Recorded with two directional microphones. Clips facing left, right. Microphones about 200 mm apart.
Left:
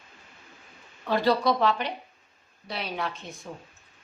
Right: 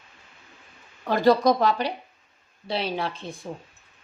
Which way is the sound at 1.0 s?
45° right (ahead or behind).